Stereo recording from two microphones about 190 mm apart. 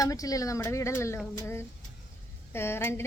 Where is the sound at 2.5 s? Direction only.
10° left (ahead or behind).